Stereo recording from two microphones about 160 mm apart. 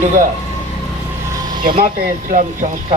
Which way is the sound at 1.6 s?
60° right (ahead or behind).